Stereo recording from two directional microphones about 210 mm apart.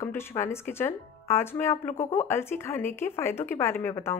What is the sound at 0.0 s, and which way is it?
A woman's voice, 10° left (ahead or behind).